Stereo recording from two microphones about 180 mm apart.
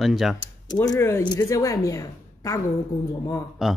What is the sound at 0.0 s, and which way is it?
Speech, centre (ahead or behind).